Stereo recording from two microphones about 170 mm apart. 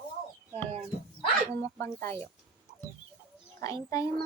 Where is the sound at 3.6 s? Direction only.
20° left (ahead or behind).